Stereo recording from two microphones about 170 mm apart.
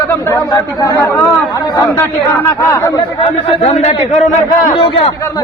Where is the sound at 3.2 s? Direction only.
40° left (ahead or behind).